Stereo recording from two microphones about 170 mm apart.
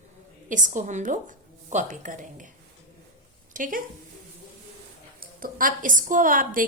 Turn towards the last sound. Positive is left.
turn(degrees=-50)  # may be behind; listen again after turning